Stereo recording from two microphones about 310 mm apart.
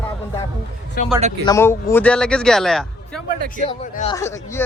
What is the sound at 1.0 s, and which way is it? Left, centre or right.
Speech, left.